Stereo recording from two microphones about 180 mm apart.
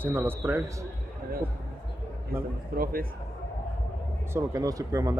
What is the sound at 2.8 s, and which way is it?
Speech, 55° right (ahead or behind).